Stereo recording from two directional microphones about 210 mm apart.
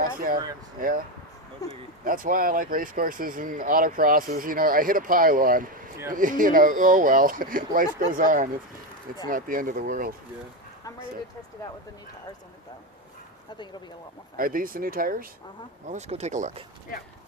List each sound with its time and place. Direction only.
0.8 s speech: 40° right (ahead or behind)
1.6 s speech: 15° left (ahead or behind)
2.0 s speech: 40° right (ahead or behind)
14.3 s speech: 40° right (ahead or behind)
15.9 s speech: 30° right (ahead or behind)